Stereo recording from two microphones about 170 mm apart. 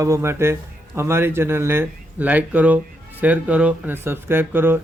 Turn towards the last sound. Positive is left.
turn(degrees=-10)  # may be behind; listen again after turning